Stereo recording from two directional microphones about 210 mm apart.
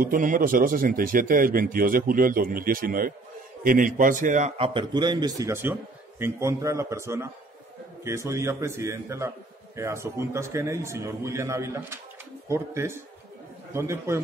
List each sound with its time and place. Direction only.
0.0 s a man's voice: 40° right (ahead or behind); by 14.2 s 10° right (ahead or behind)